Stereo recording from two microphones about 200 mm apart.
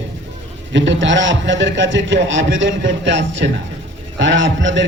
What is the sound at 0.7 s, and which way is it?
A man's voice, 65° right (ahead or behind).